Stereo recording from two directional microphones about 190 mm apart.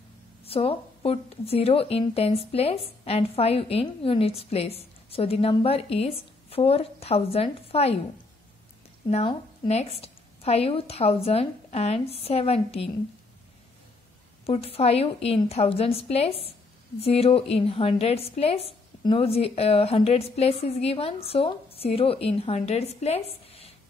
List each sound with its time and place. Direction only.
0.5 s a woman's voice: 30° left (ahead or behind)
9.1 s a woman's voice: 35° left (ahead or behind)
14.4 s a woman's voice: 30° left (ahead or behind)